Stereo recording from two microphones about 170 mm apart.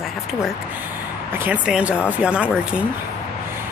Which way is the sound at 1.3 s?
10° right (ahead or behind).